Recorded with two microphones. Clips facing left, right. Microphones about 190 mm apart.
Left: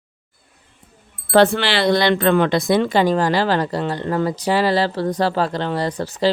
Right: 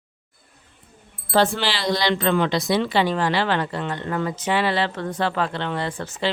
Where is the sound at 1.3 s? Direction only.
60° left (ahead or behind).